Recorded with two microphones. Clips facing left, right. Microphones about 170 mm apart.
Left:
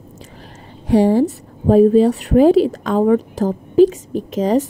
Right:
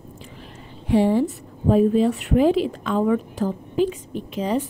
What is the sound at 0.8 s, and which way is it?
A woman's voice, 40° left (ahead or behind).